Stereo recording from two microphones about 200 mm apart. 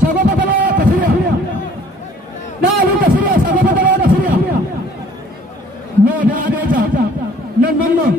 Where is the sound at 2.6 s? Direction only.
45° right (ahead or behind).